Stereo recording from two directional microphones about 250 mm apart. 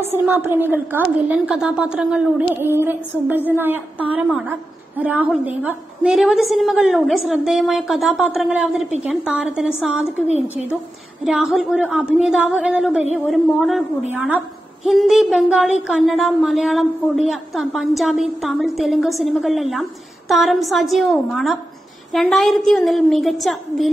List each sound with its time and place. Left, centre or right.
0.1 s a woman's voice: centre
10.2 s a woman's voice: left
11.2 s a woman's voice: centre